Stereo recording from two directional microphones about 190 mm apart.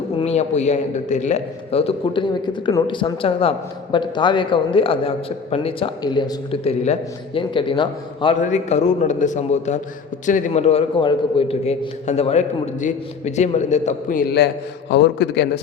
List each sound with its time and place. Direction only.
0.2 s a man's voice: 35° left (ahead or behind)
8.4 s a man's voice: 40° left (ahead or behind); by 15.6 s 60° left (ahead or behind)